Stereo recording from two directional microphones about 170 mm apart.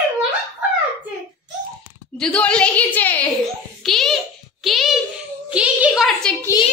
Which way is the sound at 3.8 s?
Centre (ahead or behind).